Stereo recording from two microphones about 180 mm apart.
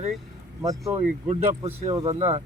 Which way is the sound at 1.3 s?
35° right (ahead or behind).